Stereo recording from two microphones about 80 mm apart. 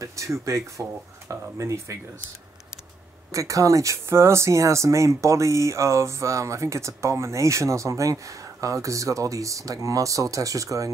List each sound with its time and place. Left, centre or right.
0.0 s speech: right
3.3 s speech: right